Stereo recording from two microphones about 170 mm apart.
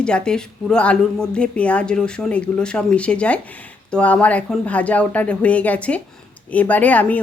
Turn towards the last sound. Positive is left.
turn(degrees=10)  # may be behind; listen again after turning